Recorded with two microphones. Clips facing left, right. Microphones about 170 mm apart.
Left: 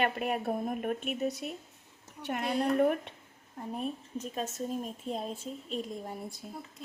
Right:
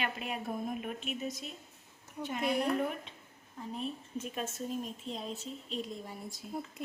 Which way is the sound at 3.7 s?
50° left (ahead or behind).